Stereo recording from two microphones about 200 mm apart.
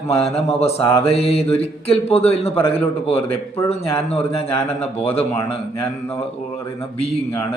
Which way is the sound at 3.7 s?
30° left (ahead or behind).